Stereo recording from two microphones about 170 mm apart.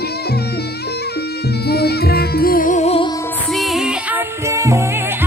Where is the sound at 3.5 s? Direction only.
Centre (ahead or behind); by 5.3 s 15° right (ahead or behind).